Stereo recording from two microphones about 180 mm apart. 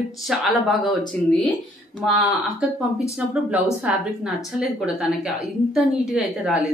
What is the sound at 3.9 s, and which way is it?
A woman's voice, 5° right (ahead or behind).